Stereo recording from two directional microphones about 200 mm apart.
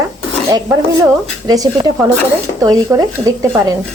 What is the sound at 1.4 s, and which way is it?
Speech, 20° right (ahead or behind).